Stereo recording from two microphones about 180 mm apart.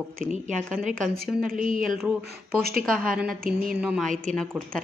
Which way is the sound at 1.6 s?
50° right (ahead or behind).